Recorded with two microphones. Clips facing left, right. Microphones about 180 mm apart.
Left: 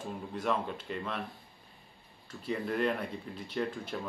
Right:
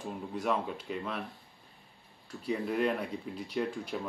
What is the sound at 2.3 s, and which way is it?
Speech, 5° right (ahead or behind).